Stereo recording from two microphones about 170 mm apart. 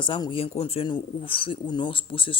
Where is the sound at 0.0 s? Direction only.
30° left (ahead or behind).